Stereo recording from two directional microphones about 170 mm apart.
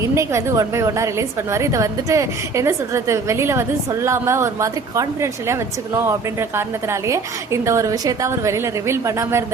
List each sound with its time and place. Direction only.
0.0 s a woman's voice: 15° right (ahead or behind)
6.6 s a woman's voice: 15° right (ahead or behind)